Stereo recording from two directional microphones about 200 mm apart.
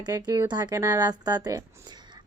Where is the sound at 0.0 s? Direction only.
20° right (ahead or behind).